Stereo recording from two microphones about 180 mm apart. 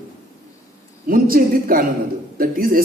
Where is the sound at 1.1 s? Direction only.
55° right (ahead or behind).